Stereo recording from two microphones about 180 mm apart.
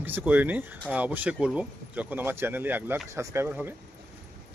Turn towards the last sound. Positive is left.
turn(degrees=-10)  # may be behind; listen again after turning